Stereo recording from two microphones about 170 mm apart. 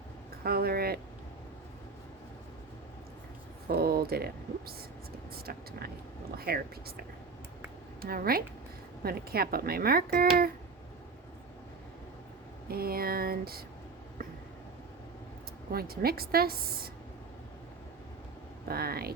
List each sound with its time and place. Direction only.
0.4 s speech: 65° right (ahead or behind)
3.7 s speech: 65° right (ahead or behind)
8.0 s speech: 60° right (ahead or behind)
12.6 s speech: 60° right (ahead or behind)
15.7 s speech: 60° right (ahead or behind)
18.7 s speech: 65° right (ahead or behind)